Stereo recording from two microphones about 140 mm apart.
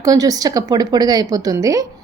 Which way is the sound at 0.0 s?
25° right (ahead or behind).